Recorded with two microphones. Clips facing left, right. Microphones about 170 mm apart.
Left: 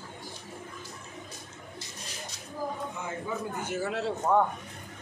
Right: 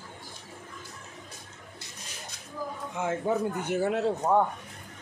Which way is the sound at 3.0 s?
75° right (ahead or behind).